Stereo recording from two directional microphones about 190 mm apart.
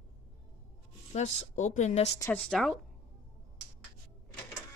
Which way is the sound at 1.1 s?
35° left (ahead or behind).